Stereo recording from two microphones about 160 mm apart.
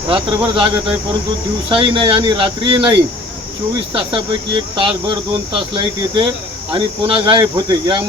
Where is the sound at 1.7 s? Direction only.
35° right (ahead or behind).